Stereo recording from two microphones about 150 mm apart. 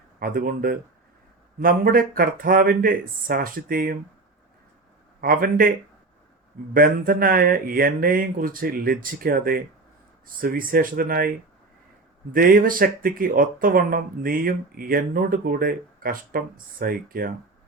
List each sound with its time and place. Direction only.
0.2 s speech: 75° right (ahead or behind)
5.2 s speech: 75° right (ahead or behind)
6.7 s speech: 75° right (ahead or behind)
12.3 s speech: 75° right (ahead or behind)